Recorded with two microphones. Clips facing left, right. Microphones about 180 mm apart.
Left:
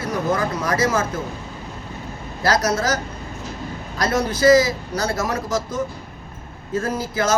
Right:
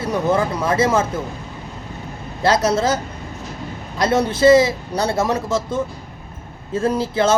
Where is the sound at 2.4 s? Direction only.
25° right (ahead or behind).